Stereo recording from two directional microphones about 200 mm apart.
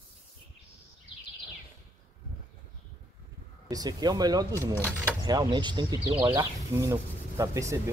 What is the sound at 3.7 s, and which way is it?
Speech, 20° right (ahead or behind).